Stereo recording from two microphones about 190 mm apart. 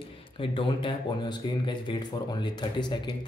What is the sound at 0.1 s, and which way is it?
Speech, 30° left (ahead or behind).